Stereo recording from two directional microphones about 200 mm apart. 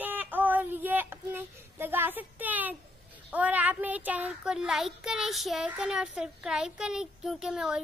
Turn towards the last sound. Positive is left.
turn(degrees=-5)  # may be behind; listen again after turning